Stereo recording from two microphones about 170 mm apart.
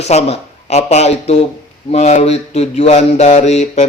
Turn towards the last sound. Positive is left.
turn(degrees=40)  # may be behind; listen again after turning